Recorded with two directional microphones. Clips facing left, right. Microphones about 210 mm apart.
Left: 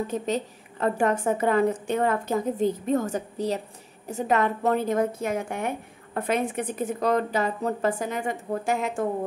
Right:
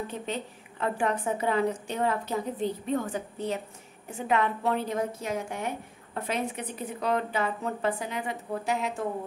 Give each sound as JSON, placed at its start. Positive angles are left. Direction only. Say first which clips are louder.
{"t": 0.0, "sound": "a woman's voice", "louder": "left 6 dB", "side_deg": 40}